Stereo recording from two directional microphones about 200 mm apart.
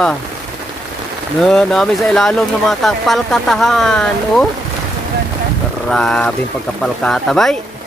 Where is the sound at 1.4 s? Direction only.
Centre (ahead or behind).